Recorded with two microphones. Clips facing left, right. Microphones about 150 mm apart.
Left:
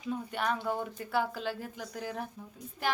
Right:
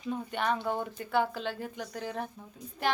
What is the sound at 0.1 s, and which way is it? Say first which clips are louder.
Speech: right 2 dB; centre (ahead or behind).